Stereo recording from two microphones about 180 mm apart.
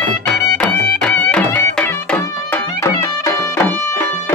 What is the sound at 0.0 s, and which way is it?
Music, 5° left (ahead or behind).